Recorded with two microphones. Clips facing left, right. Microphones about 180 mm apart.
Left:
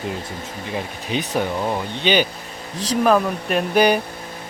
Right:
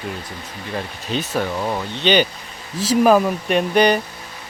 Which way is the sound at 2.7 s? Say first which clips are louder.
Right 3 dB; 5° right (ahead or behind).